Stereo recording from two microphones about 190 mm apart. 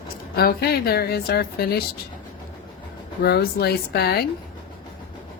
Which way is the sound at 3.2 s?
55° left (ahead or behind).